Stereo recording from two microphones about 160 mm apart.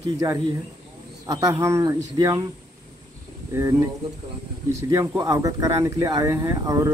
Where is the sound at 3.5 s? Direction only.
20° right (ahead or behind).